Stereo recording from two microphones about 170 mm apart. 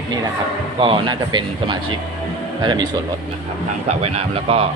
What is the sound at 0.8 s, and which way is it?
Speech, 30° right (ahead or behind).